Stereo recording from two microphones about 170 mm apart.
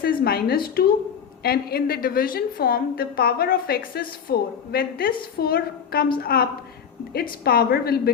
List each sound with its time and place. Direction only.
0.0 s a woman's voice: 60° left (ahead or behind)